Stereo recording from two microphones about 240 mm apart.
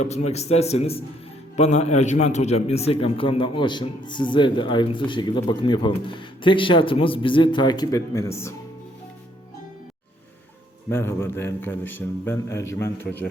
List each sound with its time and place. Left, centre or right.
0.0 s a man's voice: left; by 8.5 s centre
10.8 s a man's voice: centre